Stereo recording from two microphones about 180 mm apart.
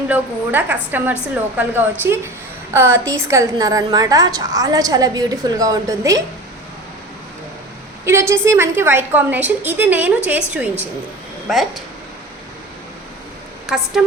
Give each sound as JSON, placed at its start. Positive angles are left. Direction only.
{"t": 0.1, "sound": "a woman's voice", "side_deg": -10}
{"t": 8.0, "sound": "a woman's voice", "side_deg": -15}